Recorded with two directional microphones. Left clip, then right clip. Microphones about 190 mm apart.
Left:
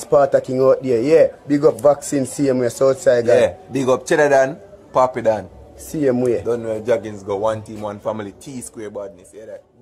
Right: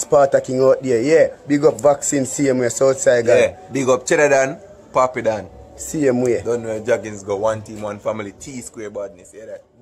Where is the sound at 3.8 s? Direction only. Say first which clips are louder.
Even; 20° left (ahead or behind).